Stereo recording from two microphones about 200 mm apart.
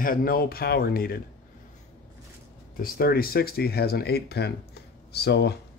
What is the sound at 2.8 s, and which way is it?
Speech, 50° left (ahead or behind).